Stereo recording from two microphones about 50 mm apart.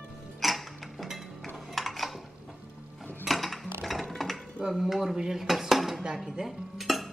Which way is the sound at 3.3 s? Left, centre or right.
Centre.